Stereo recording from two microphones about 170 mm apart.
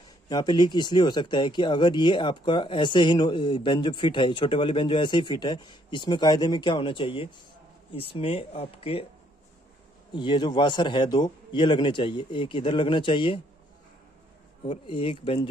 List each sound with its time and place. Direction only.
0.3 s speech: 25° left (ahead or behind)
10.1 s speech: 25° left (ahead or behind)
14.7 s speech: 30° left (ahead or behind)